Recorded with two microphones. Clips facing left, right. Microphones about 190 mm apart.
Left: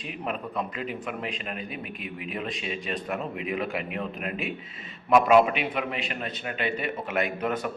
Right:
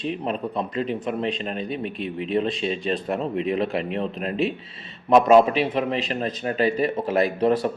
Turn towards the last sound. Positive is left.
turn(degrees=-30)  # may be behind; listen again after turning